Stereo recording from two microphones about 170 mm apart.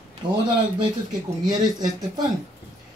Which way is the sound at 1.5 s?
25° right (ahead or behind).